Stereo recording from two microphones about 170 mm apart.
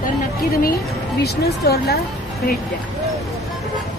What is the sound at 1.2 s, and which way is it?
Speech, 70° left (ahead or behind).